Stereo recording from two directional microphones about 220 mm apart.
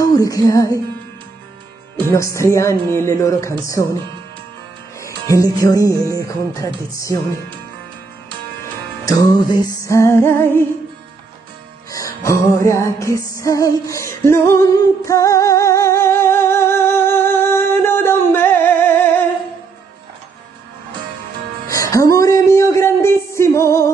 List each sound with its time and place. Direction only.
0.0 s music: 15° left (ahead or behind)
2.0 s music: 10° left (ahead or behind)
5.4 s music: 15° left (ahead or behind)
9.0 s music: 15° left (ahead or behind)
11.9 s music: 15° left (ahead or behind)
21.6 s music: 15° left (ahead or behind)